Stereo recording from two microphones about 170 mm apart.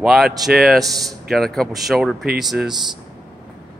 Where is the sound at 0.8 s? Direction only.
20° right (ahead or behind).